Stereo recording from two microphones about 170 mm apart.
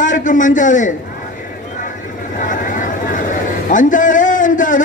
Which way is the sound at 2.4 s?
50° left (ahead or behind).